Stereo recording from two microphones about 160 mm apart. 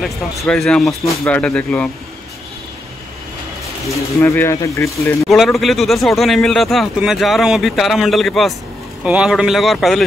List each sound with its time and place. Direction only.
0.0 s speech: centre (ahead or behind)
3.9 s speech: 15° left (ahead or behind)
5.3 s speech: centre (ahead or behind)